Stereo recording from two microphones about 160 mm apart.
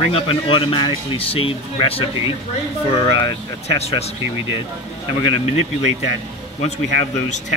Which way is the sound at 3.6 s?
40° left (ahead or behind).